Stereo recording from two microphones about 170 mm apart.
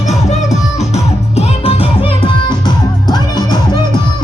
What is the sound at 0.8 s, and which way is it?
Music, 40° left (ahead or behind).